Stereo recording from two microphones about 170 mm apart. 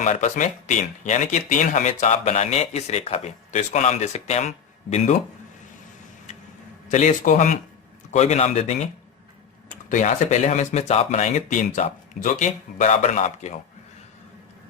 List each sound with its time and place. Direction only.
0.0 s speech: 45° left (ahead or behind)
6.8 s speech: 45° left (ahead or behind)
9.9 s speech: 45° left (ahead or behind)